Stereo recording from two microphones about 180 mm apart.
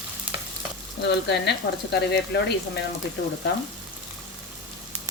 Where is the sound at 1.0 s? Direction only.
70° left (ahead or behind).